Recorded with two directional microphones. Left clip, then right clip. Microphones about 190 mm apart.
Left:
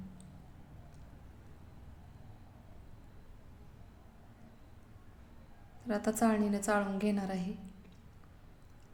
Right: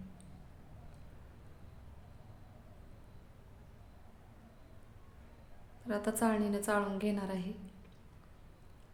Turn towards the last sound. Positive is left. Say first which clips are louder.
# left 1 dB
turn(degrees=5)  # may be behind; listen again after turning